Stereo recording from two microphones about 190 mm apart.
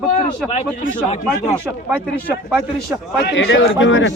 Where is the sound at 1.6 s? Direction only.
10° right (ahead or behind).